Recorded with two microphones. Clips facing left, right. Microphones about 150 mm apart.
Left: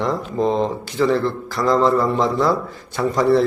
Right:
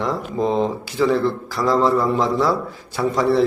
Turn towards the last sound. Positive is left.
turn(degrees=0)  # may be behind; listen again after turning